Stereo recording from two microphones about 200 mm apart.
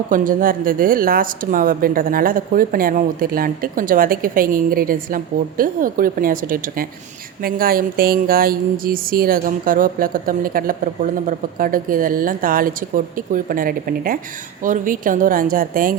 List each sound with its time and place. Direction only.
0.1 s speech: 45° right (ahead or behind)